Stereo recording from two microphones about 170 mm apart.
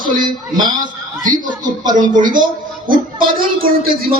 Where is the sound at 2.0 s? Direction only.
50° right (ahead or behind).